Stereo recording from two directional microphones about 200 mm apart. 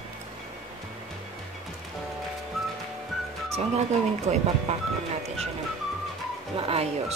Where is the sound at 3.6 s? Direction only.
30° right (ahead or behind).